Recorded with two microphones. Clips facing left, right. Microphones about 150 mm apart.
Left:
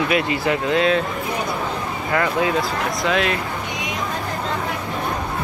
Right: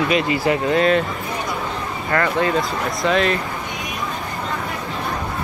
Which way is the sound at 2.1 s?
5° left (ahead or behind).